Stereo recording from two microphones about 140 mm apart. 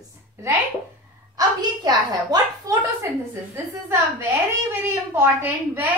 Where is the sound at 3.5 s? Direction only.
15° right (ahead or behind).